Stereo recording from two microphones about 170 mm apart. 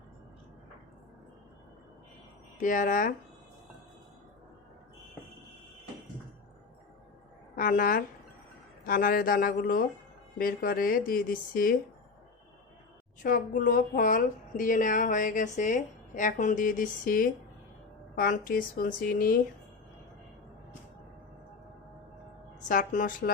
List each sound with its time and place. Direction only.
2.6 s speech: 50° left (ahead or behind)
7.5 s a woman's voice: 55° left (ahead or behind)
13.2 s speech: 55° left (ahead or behind)
22.7 s speech: 50° left (ahead or behind)